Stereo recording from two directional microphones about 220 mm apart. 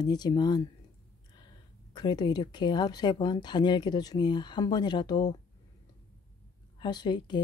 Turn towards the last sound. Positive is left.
turn(degrees=20)  # may be behind; listen again after turning